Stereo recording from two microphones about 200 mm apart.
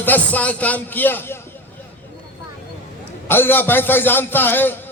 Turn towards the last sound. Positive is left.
turn(degrees=10)  # may be behind; listen again after turning